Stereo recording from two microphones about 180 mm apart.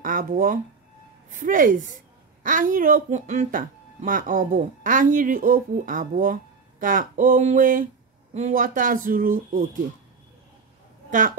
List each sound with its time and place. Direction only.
0.0 s speech: 50° right (ahead or behind)
11.1 s a woman's voice: 45° right (ahead or behind)